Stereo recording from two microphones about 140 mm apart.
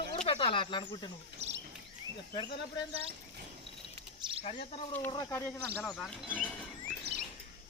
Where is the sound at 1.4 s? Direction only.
50° right (ahead or behind).